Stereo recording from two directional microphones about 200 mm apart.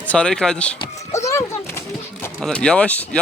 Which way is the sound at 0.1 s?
5° left (ahead or behind).